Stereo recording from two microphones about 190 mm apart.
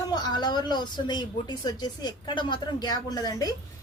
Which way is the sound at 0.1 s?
20° left (ahead or behind).